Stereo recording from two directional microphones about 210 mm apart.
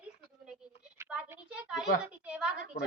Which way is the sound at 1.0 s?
10° right (ahead or behind).